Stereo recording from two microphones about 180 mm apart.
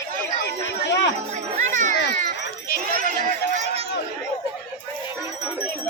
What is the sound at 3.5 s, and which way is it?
Chatter, 35° right (ahead or behind).